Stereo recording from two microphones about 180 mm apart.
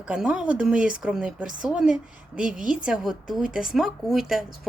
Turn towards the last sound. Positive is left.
turn(degrees=0)  # may be behind; listen again after turning